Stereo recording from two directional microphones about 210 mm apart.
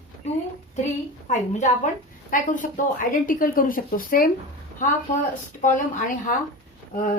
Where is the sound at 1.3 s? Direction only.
35° left (ahead or behind).